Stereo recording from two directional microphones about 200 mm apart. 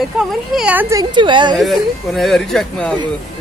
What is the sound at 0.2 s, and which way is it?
A woman's voice, 5° right (ahead or behind).